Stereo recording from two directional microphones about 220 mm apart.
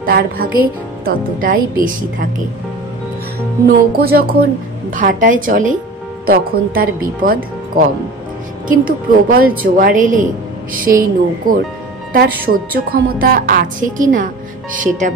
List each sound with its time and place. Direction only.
0.0 s speech: 40° right (ahead or behind)
3.6 s speech: 45° right (ahead or behind)
8.6 s speech: 40° right (ahead or behind)